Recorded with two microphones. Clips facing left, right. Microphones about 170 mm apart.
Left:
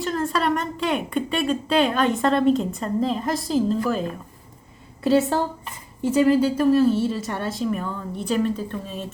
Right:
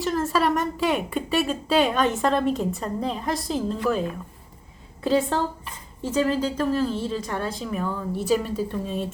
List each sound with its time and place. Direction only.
0.0 s a woman's voice: 5° right (ahead or behind)
5.0 s a woman's voice: 5° left (ahead or behind)